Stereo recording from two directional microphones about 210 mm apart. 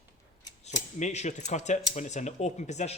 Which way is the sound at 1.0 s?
35° left (ahead or behind).